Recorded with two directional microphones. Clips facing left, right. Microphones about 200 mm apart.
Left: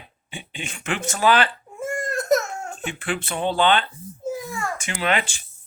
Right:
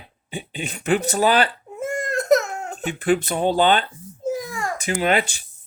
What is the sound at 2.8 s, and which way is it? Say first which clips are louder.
Speech: right 9 dB; 40° right (ahead or behind).